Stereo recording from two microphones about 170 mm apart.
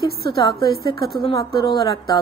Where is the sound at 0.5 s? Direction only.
65° right (ahead or behind).